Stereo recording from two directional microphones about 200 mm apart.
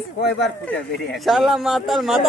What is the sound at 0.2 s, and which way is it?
Speech, 60° left (ahead or behind).